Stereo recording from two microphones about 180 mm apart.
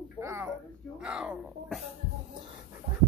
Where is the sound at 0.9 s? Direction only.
5° right (ahead or behind).